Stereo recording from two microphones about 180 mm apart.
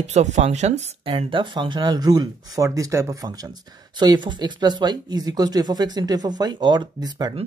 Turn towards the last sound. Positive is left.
turn(degrees=-20)  # may be behind; listen again after turning